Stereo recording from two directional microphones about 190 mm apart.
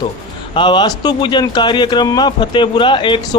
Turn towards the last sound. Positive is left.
turn(degrees=25)  # may be behind; listen again after turning